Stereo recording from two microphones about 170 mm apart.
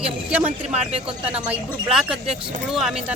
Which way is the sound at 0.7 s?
40° right (ahead or behind).